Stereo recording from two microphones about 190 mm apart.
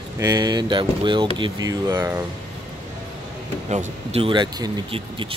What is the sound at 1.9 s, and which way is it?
Speech, 10° right (ahead or behind).